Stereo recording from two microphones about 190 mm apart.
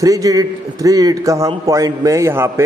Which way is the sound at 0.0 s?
20° right (ahead or behind).